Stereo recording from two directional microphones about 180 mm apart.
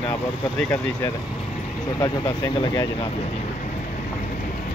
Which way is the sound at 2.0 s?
25° left (ahead or behind).